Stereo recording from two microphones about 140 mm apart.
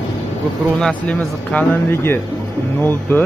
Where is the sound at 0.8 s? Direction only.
10° left (ahead or behind).